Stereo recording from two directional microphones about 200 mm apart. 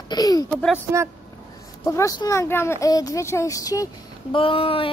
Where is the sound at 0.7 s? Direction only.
15° right (ahead or behind).